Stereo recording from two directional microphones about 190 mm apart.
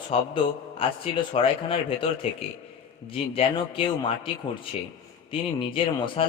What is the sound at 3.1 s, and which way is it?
A man's voice, 30° left (ahead or behind).